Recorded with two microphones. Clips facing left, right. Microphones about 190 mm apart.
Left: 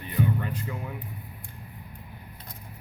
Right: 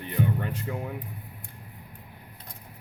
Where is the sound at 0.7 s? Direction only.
55° right (ahead or behind).